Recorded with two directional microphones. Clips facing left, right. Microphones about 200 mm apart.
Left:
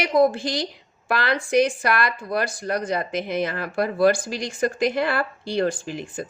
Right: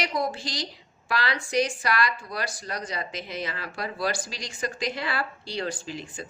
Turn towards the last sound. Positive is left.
turn(degrees=50)  # may be behind; listen again after turning